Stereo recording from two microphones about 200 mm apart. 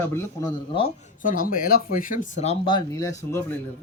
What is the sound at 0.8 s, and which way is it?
Speech, 45° left (ahead or behind).